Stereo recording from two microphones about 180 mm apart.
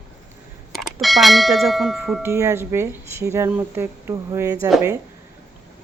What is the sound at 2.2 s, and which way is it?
Speech, 15° right (ahead or behind).